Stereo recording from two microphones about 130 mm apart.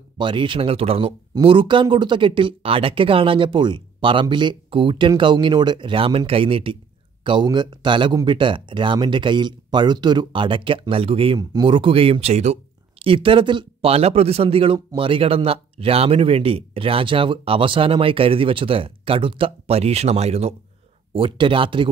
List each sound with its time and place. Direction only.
0.2 s speech: 40° right (ahead or behind)
11.3 s speech: 35° right (ahead or behind); by 12.5 s 55° right (ahead or behind)
13.0 s speech: 45° right (ahead or behind)
21.1 s speech: 40° right (ahead or behind)